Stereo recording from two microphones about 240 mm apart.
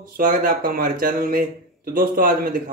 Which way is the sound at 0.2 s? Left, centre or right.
Right.